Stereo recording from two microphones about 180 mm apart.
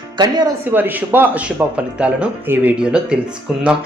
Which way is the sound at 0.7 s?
10° right (ahead or behind).